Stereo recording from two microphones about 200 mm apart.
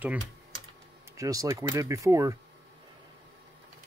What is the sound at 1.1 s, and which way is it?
Speech, 15° right (ahead or behind).